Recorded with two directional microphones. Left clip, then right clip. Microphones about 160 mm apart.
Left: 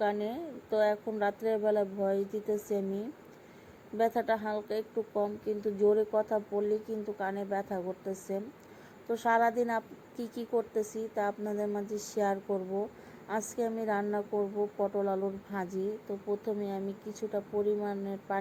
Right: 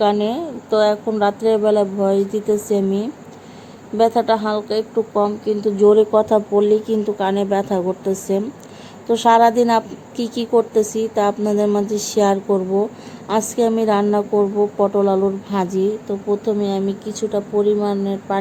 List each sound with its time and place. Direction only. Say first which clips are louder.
0.0 s a woman's voice: right 15 dB; 10° right (ahead or behind)
6.1 s a woman's voice: right 15 dB; 20° right (ahead or behind)